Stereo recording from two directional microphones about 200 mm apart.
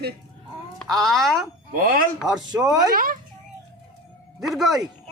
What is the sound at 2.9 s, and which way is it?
Speech, 45° right (ahead or behind).